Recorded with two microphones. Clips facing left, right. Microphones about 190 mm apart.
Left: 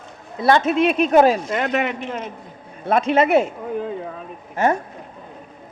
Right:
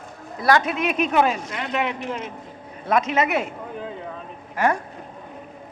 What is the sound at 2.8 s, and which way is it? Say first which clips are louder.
Speech: left 4 dB; 30° left (ahead or behind).